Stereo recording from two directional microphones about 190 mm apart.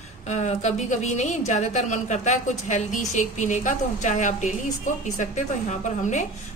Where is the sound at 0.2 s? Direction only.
35° left (ahead or behind).